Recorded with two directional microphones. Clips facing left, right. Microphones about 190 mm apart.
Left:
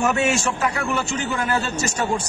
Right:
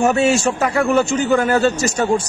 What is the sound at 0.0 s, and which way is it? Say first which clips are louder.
A man's voice: right 6 dB; 30° right (ahead or behind).